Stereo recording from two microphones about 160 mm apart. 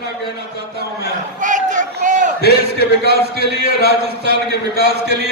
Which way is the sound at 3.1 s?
90° right.